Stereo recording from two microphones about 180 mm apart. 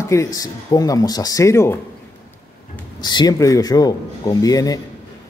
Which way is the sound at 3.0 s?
25° left (ahead or behind).